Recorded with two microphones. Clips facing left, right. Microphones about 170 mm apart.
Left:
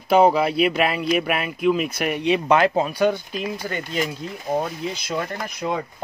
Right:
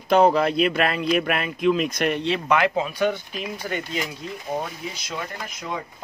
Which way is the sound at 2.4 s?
35° left (ahead or behind).